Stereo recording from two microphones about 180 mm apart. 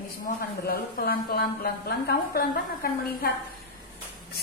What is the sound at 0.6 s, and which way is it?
A woman's voice, 60° left (ahead or behind).